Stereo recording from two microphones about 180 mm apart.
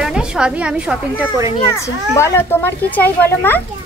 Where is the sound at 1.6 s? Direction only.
15° left (ahead or behind).